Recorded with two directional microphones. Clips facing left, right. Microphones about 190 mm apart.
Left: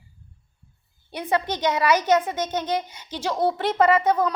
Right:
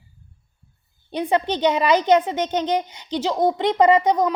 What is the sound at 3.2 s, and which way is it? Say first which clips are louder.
A woman's voice: right 3 dB; 10° right (ahead or behind).